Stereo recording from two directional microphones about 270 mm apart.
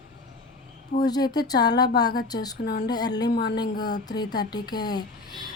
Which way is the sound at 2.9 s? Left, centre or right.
Centre.